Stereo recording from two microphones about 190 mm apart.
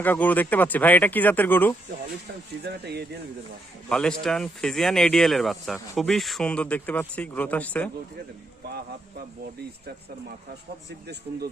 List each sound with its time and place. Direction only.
0.0 s speech: 10° left (ahead or behind)
2.6 s speech: 60° right (ahead or behind)
3.8 s speech: 5° left (ahead or behind)